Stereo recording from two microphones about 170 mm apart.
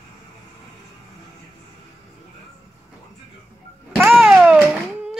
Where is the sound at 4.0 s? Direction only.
Centre (ahead or behind).